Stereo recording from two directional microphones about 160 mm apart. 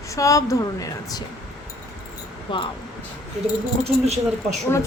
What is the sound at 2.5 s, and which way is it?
Speech, 30° left (ahead or behind).